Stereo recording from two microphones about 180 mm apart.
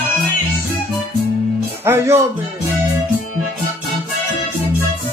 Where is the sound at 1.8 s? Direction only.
15° right (ahead or behind).